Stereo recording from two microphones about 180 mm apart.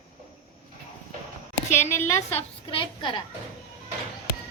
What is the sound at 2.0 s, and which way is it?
Speech, 10° left (ahead or behind).